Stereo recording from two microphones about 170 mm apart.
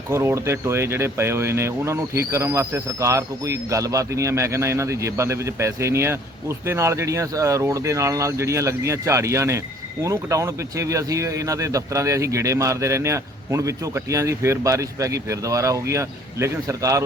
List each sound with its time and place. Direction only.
0.1 s speech: 15° right (ahead or behind)